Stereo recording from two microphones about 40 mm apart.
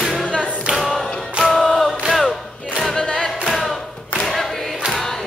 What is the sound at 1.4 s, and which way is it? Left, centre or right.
Chant, centre.